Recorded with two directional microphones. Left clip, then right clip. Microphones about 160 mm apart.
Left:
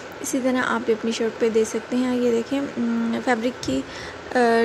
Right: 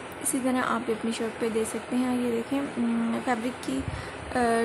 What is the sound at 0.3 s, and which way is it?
Speech, 15° left (ahead or behind).